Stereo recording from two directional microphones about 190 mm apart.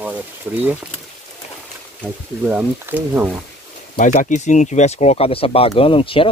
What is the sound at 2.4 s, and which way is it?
Speech, 10° right (ahead or behind).